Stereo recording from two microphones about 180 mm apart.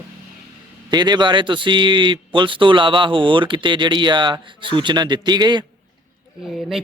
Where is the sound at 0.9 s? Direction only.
25° right (ahead or behind).